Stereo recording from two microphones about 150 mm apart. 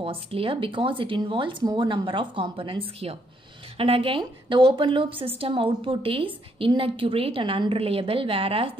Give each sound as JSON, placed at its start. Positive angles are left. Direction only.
{"t": 0.0, "sound": "a woman's voice", "side_deg": -40}